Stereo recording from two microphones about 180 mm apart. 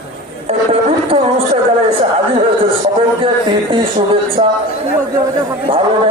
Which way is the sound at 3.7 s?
30° right (ahead or behind).